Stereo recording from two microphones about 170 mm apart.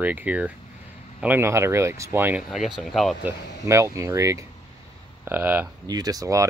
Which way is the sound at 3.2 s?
15° right (ahead or behind).